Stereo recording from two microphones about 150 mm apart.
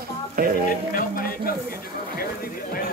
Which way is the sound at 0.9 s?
70° left (ahead or behind).